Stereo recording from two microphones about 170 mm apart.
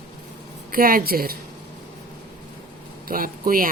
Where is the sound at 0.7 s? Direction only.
60° right (ahead or behind).